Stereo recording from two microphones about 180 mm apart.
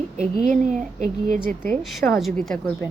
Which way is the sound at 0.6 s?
45° right (ahead or behind).